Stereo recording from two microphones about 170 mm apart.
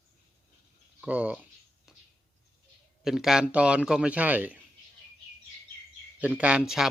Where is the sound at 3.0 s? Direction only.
Centre (ahead or behind).